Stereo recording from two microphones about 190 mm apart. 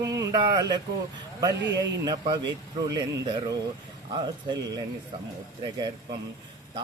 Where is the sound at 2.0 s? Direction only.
25° right (ahead or behind).